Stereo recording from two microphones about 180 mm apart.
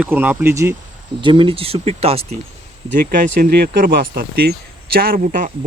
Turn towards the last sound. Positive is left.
turn(degrees=-50)  # may be behind; listen again after turning